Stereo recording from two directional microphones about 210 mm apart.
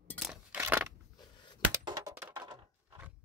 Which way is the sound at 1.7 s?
15° right (ahead or behind).